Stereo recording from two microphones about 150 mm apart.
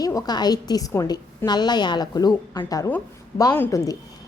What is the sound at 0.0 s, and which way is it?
A woman's voice, 25° left (ahead or behind).